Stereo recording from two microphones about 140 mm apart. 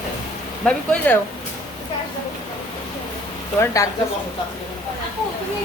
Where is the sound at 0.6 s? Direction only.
10° left (ahead or behind).